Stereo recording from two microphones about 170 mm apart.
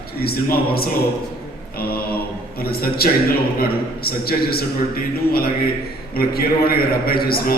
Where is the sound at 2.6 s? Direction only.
60° left (ahead or behind).